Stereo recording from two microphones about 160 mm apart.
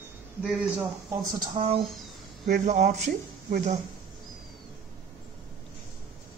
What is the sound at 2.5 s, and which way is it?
Speech, 50° right (ahead or behind).